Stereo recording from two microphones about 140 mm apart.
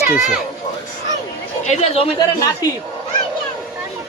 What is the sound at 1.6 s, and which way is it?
Speech, 50° left (ahead or behind).